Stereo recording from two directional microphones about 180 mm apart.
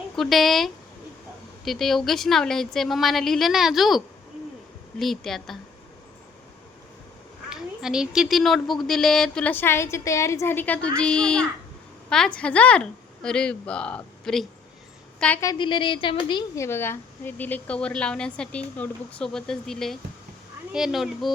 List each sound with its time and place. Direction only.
0.2 s speech: centre (ahead or behind)
7.5 s a woman's voice: 5° right (ahead or behind)
15.4 s a woman's voice: 25° left (ahead or behind)
16.6 s a woman's voice: 15° left (ahead or behind)